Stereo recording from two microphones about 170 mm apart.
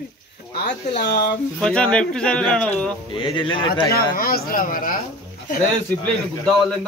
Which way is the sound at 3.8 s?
60° left (ahead or behind).